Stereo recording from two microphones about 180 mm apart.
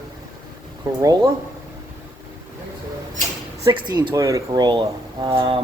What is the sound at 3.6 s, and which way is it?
Speech, 20° right (ahead or behind).